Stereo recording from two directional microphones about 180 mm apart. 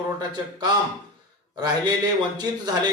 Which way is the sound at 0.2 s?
25° right (ahead or behind).